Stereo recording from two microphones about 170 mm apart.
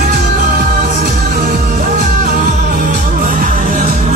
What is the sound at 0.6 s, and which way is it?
Music, 60° right (ahead or behind).